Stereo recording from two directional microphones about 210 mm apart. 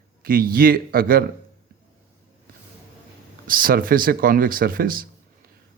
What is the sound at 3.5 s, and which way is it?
Speech, 45° right (ahead or behind).